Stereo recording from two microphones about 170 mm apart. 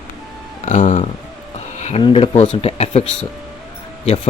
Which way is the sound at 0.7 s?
50° left (ahead or behind).